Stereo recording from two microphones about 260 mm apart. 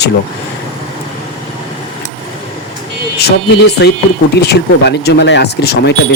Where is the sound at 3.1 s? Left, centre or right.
Left.